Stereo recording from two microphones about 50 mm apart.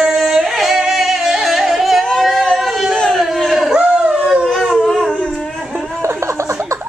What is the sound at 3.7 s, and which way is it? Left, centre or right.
Dog, right.